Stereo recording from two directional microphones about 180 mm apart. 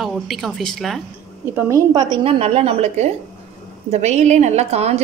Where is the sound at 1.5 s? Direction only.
15° right (ahead or behind); by 5.0 s 35° right (ahead or behind).